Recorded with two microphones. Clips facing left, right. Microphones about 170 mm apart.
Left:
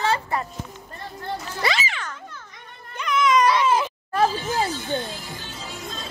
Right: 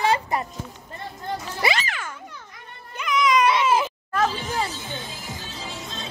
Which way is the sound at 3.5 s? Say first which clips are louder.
Even; 20° right (ahead or behind).